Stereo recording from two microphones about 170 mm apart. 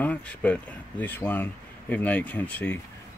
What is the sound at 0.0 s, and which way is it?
Speech, 10° left (ahead or behind).